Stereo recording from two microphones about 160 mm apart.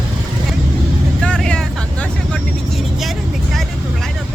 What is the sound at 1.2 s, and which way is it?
Vehicle, 5° left (ahead or behind).